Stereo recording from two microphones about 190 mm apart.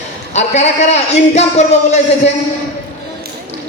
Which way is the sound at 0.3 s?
35° left (ahead or behind).